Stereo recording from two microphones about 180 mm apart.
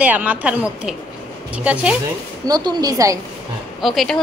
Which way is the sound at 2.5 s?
20° right (ahead or behind).